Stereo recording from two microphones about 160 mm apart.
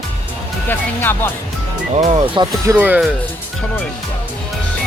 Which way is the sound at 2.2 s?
30° right (ahead or behind).